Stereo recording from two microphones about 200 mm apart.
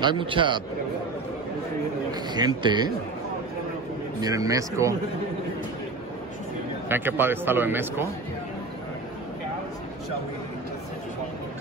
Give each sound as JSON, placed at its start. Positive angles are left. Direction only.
{"t": 0.0, "sound": "a man's voice", "side_deg": -25}
{"t": 2.3, "sound": "a man's voice", "side_deg": -20}
{"t": 4.2, "sound": "a man's voice", "side_deg": -15}
{"t": 6.9, "sound": "a man's voice", "side_deg": -10}